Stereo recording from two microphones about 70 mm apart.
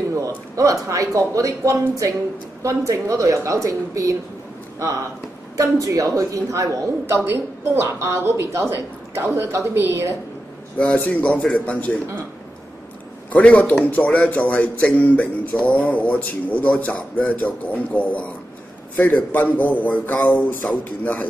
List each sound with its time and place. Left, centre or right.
0.6 s a woman's voice: right
5.6 s speech: right
7.2 s a woman's voice: right
10.8 s a man's voice: centre
13.3 s a man's voice: centre